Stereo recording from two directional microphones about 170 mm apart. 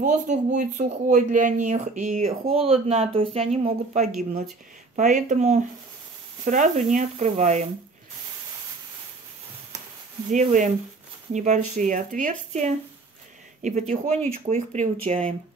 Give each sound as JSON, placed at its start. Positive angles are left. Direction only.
{"t": 0.0, "sound": "speech", "side_deg": -45}
{"t": 2.4, "sound": "speech", "side_deg": -35}
{"t": 10.3, "sound": "speech", "side_deg": -50}